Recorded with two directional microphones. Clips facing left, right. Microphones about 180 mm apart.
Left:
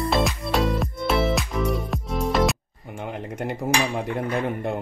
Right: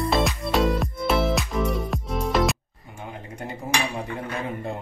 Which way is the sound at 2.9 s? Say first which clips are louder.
Left 6 dB; 65° left (ahead or behind).